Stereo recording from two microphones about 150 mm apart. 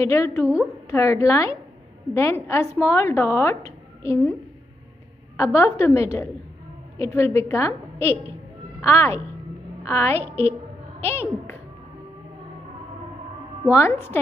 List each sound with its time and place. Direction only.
0.0 s a woman's voice: 20° left (ahead or behind)
5.4 s a woman's voice: 20° left (ahead or behind)
13.7 s speech: 15° left (ahead or behind)